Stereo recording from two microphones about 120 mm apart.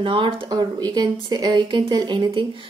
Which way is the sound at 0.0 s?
45° right (ahead or behind).